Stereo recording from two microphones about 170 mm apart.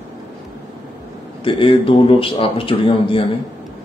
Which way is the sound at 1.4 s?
30° left (ahead or behind).